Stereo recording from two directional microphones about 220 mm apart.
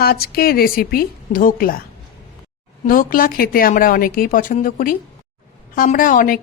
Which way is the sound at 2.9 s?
40° left (ahead or behind).